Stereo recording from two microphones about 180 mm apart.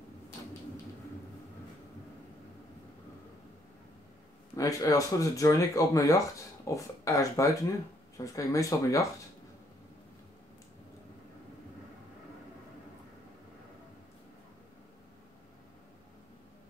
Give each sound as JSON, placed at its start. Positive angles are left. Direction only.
{"t": 4.6, "sound": "speech", "side_deg": 20}